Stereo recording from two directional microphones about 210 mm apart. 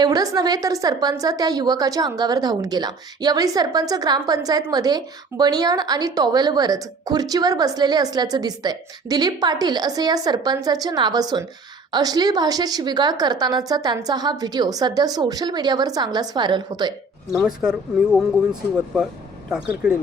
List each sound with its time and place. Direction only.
0.0 s a woman's voice: 15° right (ahead or behind)
17.3 s speech: 5° right (ahead or behind)
19.5 s speech: 5° right (ahead or behind)